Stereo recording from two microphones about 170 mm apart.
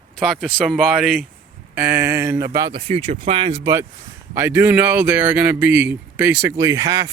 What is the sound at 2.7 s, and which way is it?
Speech, 35° right (ahead or behind).